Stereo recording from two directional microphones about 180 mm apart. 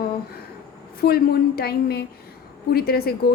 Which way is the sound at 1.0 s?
60° left (ahead or behind).